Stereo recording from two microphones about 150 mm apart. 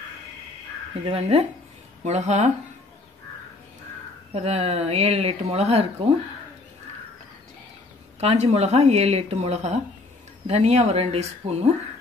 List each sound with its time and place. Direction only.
1.0 s speech: 40° right (ahead or behind)
4.3 s speech: 45° right (ahead or behind)
8.2 s speech: 45° right (ahead or behind)